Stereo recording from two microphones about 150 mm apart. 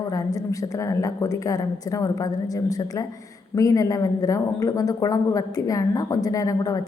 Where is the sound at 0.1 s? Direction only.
25° left (ahead or behind).